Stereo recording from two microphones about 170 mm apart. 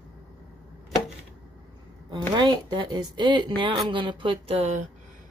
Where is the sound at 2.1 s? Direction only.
25° right (ahead or behind).